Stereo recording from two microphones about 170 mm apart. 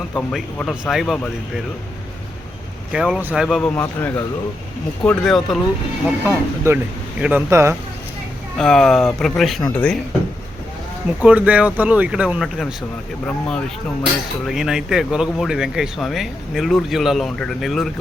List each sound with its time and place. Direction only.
0.1 s speech: 5° left (ahead or behind)
2.9 s speech: 5° right (ahead or behind)
3.6 s speech: 10° left (ahead or behind); by 7.4 s 5° right (ahead or behind)
7.5 s speech: 15° right (ahead or behind)
8.5 s speech: 5° left (ahead or behind)
11.2 s speech: 10° right (ahead or behind)
14.4 s speech: centre (ahead or behind)